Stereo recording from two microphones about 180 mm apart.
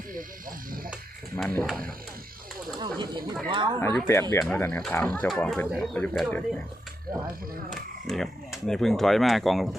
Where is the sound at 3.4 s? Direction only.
25° right (ahead or behind).